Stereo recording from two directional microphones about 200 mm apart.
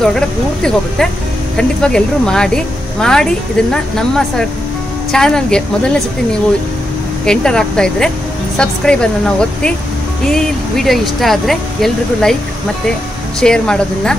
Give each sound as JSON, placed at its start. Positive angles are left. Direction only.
{"t": 0.0, "sound": "speech", "side_deg": 5}
{"t": 7.2, "sound": "speech", "side_deg": 5}
{"t": 13.4, "sound": "speech", "side_deg": 5}